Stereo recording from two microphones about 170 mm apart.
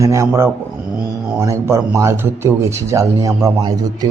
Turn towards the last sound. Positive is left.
turn(degrees=-25)  # may be behind; listen again after turning